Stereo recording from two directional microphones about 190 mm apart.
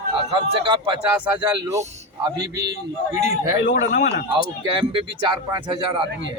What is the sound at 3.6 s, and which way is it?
Speech, 70° left (ahead or behind).